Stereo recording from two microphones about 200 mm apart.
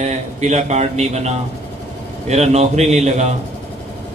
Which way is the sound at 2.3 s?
35° right (ahead or behind).